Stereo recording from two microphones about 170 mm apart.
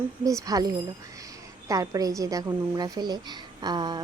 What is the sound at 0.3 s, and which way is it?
A woman's voice, 20° right (ahead or behind).